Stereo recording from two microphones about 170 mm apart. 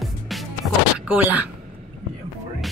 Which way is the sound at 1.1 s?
10° right (ahead or behind).